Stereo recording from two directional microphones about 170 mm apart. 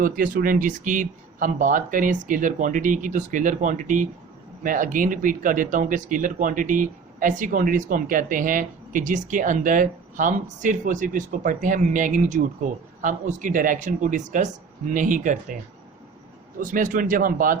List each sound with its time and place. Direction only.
0.0 s speech: 55° right (ahead or behind)
16.6 s speech: 50° right (ahead or behind)